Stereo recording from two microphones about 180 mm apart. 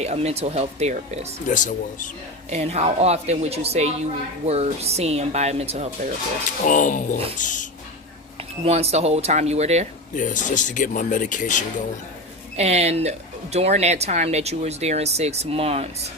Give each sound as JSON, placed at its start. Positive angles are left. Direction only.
{"t": 0.0, "sound": "speech", "side_deg": -35}
{"t": 1.5, "sound": "speech", "side_deg": 45}
{"t": 2.5, "sound": "speech", "side_deg": -35}
{"t": 6.7, "sound": "speech", "side_deg": 45}
{"t": 8.6, "sound": "speech", "side_deg": -35}
{"t": 10.2, "sound": "speech", "side_deg": 45}
{"t": 12.5, "sound": "speech", "side_deg": -35}